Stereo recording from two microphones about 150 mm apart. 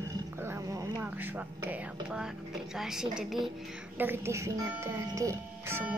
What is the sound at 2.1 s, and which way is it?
A woman's voice, 5° right (ahead or behind).